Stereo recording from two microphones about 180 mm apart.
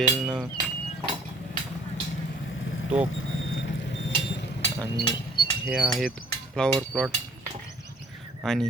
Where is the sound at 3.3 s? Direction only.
90° left.